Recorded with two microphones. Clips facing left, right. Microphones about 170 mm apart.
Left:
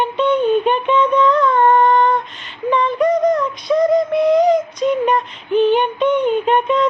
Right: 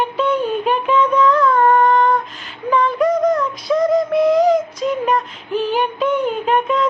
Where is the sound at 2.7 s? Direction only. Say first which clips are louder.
Even; centre (ahead or behind).